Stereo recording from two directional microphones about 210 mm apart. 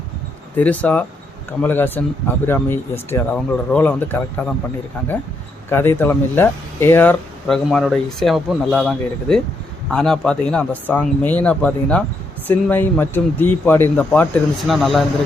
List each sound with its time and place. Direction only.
0.6 s speech: 5° left (ahead or behind)
5.7 s a man's voice: 10° left (ahead or behind)